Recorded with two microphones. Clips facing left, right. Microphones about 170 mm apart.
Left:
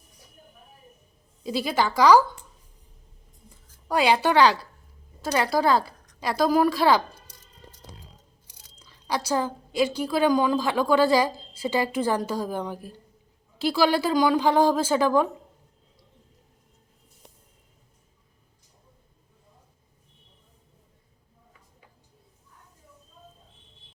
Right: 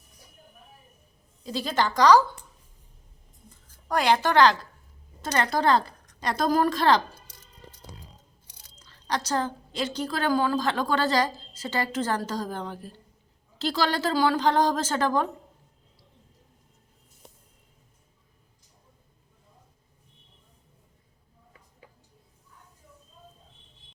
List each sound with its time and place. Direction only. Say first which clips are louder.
1.5 s a woman's voice: left 2 dB; 10° left (ahead or behind)
3.8 s a woman's voice: left 2 dB; 10° left (ahead or behind)
8.8 s a woman's voice: left 1 dB; 10° left (ahead or behind)